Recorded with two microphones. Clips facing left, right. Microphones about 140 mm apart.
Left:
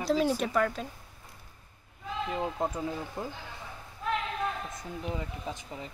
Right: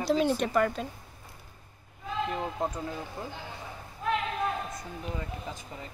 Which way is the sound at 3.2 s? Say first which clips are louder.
Left 2 dB; 20° left (ahead or behind).